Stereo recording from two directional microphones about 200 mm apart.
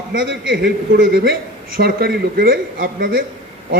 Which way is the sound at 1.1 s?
50° right (ahead or behind).